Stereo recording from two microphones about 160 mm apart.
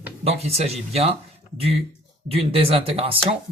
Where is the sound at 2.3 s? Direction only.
35° right (ahead or behind).